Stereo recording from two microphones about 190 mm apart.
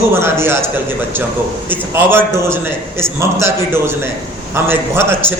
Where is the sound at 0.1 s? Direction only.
15° right (ahead or behind).